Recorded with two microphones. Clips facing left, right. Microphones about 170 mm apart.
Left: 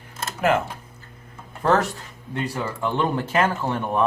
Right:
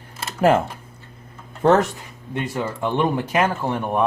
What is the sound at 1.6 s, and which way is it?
Speech, 20° right (ahead or behind).